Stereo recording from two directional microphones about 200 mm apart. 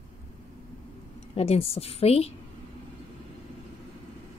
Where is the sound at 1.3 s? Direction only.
30° left (ahead or behind).